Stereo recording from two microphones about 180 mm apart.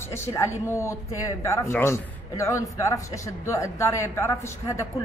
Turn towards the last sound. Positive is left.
turn(degrees=15)  # may be behind; listen again after turning